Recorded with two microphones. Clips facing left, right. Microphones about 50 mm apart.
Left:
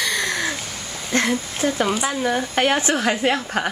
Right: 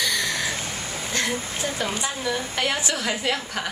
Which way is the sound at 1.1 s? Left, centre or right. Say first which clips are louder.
Left 7 dB; left.